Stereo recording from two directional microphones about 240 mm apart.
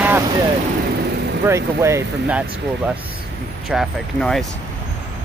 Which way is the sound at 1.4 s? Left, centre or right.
Centre.